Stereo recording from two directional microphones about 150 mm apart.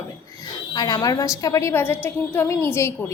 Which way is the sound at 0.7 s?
25° left (ahead or behind).